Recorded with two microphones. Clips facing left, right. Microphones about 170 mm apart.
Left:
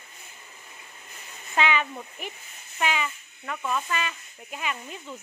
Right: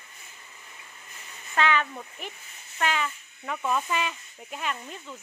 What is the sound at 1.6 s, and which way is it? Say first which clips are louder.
Speech: even; 10° left (ahead or behind).